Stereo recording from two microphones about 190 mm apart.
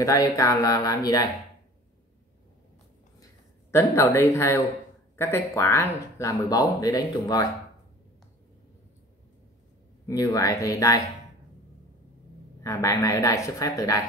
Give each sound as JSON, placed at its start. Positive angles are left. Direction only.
{"t": 0.0, "sound": "speech", "side_deg": 15}
{"t": 3.7, "sound": "speech", "side_deg": 15}
{"t": 10.0, "sound": "speech", "side_deg": 15}
{"t": 12.6, "sound": "speech", "side_deg": 15}